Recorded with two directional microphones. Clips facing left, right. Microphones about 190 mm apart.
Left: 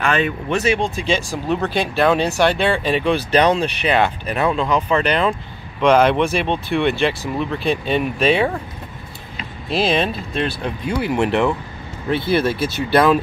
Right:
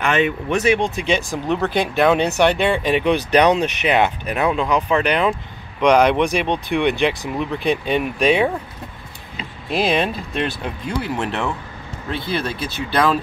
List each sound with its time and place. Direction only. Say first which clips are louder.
0.0 s speech: right 1 dB; 15° right (ahead or behind)
9.7 s speech: left 1 dB; 15° right (ahead or behind)
11.1 s speech: left 6 dB; 15° left (ahead or behind)